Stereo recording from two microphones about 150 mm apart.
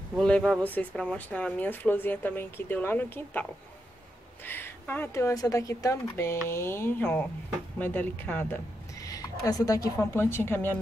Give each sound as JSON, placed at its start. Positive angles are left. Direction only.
{"t": 0.1, "sound": "speech", "side_deg": 5}
{"t": 4.5, "sound": "speech", "side_deg": 15}
{"t": 9.0, "sound": "a woman's voice", "side_deg": 25}